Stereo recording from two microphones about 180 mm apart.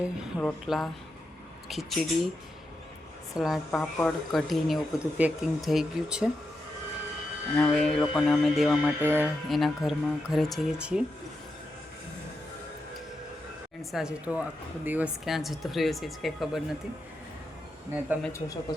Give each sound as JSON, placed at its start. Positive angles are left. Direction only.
{"t": 0.3, "sound": "speech", "side_deg": 0}
{"t": 3.3, "sound": "speech", "side_deg": 0}
{"t": 7.5, "sound": "speech", "side_deg": 5}
{"t": 9.0, "sound": "speech", "side_deg": -10}
{"t": 9.5, "sound": "speech", "side_deg": 0}
{"t": 13.9, "sound": "speech", "side_deg": -5}